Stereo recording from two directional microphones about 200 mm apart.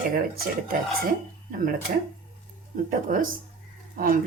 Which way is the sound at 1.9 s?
45° right (ahead or behind).